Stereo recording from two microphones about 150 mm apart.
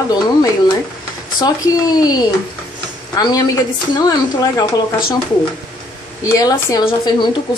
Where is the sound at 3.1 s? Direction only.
25° left (ahead or behind).